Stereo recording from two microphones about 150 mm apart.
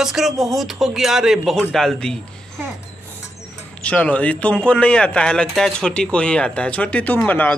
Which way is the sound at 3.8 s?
10° left (ahead or behind).